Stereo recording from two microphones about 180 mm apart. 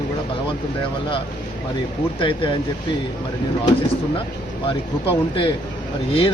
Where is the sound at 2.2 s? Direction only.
30° left (ahead or behind).